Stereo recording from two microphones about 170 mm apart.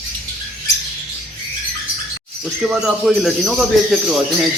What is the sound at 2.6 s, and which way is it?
Speech, 5° right (ahead or behind).